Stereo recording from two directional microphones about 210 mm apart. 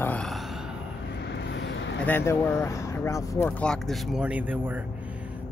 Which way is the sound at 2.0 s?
10° left (ahead or behind).